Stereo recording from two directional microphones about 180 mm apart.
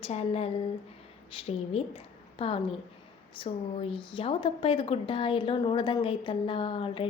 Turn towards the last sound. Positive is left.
turn(degrees=30)  # may be behind; listen again after turning